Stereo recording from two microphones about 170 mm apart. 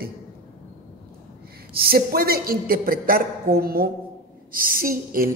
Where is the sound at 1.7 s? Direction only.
60° right (ahead or behind).